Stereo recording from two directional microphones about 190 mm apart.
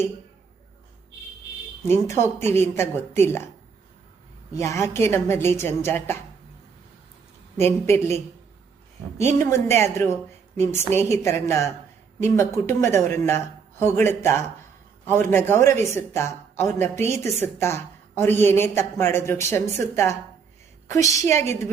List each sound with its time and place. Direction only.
1.9 s speech: 15° left (ahead or behind)
4.5 s speech: 15° left (ahead or behind)
7.5 s speech: 15° left (ahead or behind)
9.1 s a woman's voice: 15° left (ahead or behind)
20.9 s speech: 15° left (ahead or behind)